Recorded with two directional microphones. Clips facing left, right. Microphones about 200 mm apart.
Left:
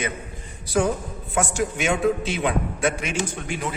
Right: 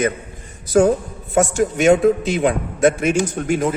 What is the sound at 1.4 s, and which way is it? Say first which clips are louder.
A man's voice: right 7 dB; 45° right (ahead or behind).